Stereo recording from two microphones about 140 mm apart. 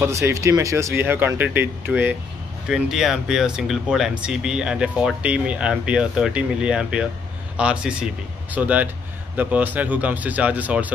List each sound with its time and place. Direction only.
0.0 s speech: 20° right (ahead or behind)
1.9 s speech: centre (ahead or behind)